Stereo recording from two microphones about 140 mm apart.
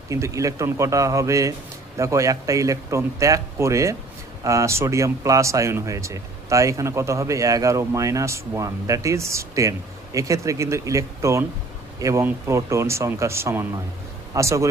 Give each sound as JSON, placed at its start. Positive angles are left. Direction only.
{"t": 0.1, "sound": "speech", "side_deg": -20}